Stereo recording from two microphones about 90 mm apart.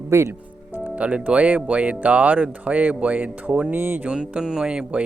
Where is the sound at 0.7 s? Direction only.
20° right (ahead or behind).